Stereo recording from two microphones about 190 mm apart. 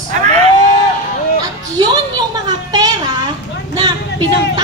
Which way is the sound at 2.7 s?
20° right (ahead or behind).